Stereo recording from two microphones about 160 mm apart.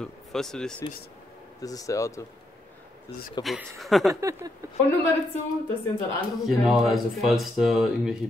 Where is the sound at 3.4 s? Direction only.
Centre (ahead or behind).